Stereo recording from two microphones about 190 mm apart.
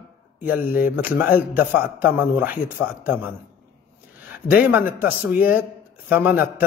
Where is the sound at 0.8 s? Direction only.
10° right (ahead or behind).